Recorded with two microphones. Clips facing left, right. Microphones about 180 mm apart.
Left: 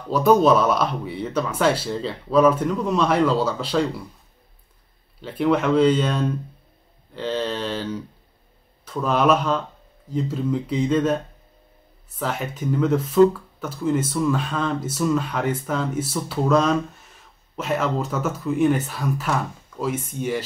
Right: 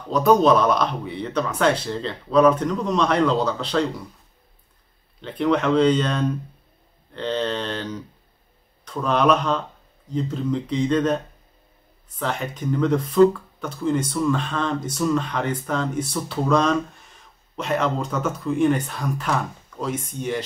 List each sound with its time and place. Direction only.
0.1 s speech: 5° left (ahead or behind)
5.2 s speech: 5° left (ahead or behind)
12.2 s speech: 5° left (ahead or behind)